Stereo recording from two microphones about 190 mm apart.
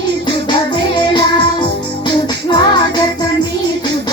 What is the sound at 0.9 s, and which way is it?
Music, 25° left (ahead or behind).